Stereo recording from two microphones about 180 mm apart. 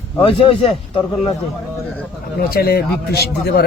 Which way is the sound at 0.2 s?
30° left (ahead or behind).